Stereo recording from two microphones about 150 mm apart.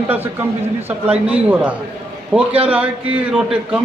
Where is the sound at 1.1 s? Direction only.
10° right (ahead or behind).